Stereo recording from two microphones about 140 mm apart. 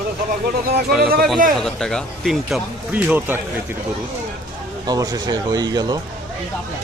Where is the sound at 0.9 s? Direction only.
5° right (ahead or behind).